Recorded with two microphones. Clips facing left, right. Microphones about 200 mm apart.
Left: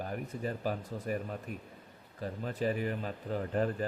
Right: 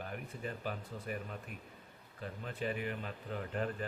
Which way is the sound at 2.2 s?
40° left (ahead or behind).